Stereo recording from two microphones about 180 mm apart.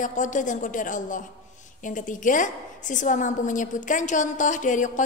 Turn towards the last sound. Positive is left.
turn(degrees=45)  # may be behind; listen again after turning